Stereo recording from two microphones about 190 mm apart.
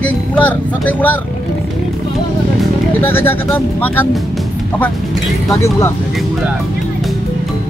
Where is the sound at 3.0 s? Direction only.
10° left (ahead or behind).